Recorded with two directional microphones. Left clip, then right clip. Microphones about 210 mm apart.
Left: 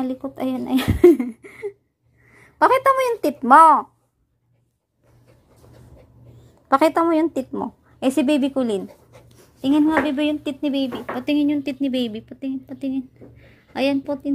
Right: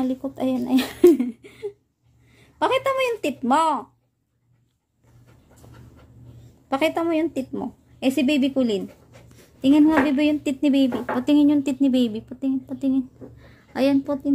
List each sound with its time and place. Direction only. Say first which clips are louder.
0.0 s a woman's voice: right 1 dB; 10° left (ahead or behind)
6.7 s a woman's voice: left 5 dB; 20° left (ahead or behind)